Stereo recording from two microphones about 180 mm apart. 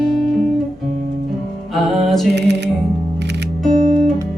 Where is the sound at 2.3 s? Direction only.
70° right (ahead or behind).